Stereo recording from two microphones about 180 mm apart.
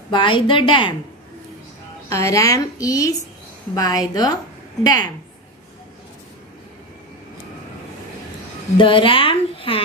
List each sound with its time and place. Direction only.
0.1 s a woman's voice: 25° left (ahead or behind)
2.0 s a woman's voice: 15° left (ahead or behind)
8.7 s a woman's voice: 30° left (ahead or behind)